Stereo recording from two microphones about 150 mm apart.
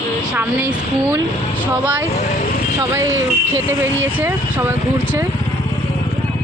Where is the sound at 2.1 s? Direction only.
55° left (ahead or behind).